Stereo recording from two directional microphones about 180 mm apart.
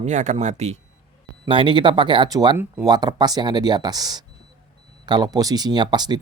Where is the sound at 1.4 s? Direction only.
30° right (ahead or behind).